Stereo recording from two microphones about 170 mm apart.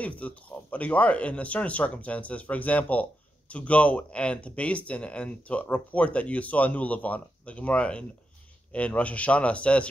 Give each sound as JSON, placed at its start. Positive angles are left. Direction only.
{"t": 0.0, "sound": "speech", "side_deg": 10}